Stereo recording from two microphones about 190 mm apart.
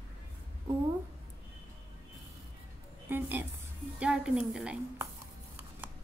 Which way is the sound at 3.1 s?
10° right (ahead or behind).